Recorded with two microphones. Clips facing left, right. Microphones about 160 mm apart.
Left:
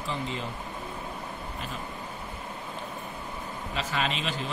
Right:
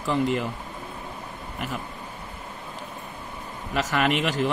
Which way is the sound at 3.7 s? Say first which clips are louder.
Right 7 dB; 90° right.